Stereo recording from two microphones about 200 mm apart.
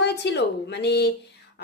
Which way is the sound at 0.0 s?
60° left (ahead or behind).